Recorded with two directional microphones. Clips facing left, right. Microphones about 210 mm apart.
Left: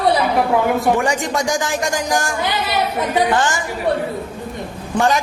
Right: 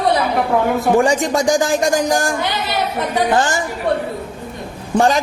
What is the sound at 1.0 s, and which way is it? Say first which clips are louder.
Speech: right 4 dB; 30° right (ahead or behind).